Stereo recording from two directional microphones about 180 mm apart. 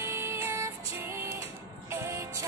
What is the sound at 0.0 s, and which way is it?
Music, 15° right (ahead or behind).